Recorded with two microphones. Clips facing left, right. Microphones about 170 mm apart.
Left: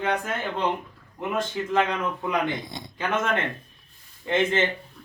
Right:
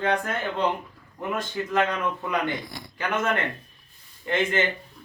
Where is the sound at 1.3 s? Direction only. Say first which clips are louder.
Left 1 dB; 20° left (ahead or behind).